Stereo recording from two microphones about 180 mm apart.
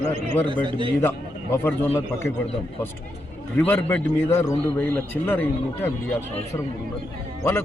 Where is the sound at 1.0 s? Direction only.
10° left (ahead or behind).